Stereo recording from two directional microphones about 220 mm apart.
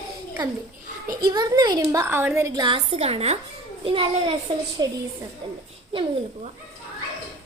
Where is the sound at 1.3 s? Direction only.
20° right (ahead or behind).